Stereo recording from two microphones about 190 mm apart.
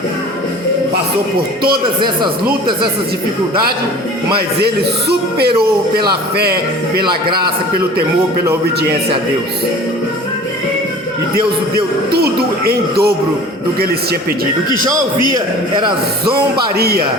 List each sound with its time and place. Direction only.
2.0 s speech: 25° right (ahead or behind)
4.6 s speech: 55° right (ahead or behind)
12.1 s speech: 55° right (ahead or behind)
16.7 s speech: 55° right (ahead or behind)